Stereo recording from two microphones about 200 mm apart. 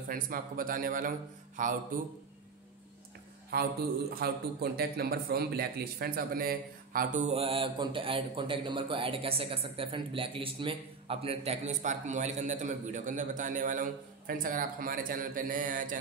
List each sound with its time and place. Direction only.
0.1 s a man's voice: 45° right (ahead or behind)
3.5 s a man's voice: 50° right (ahead or behind)